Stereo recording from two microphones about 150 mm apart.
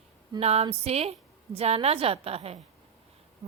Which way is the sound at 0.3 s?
45° right (ahead or behind).